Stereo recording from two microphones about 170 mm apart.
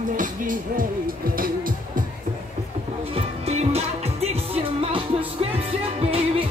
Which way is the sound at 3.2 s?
35° right (ahead or behind).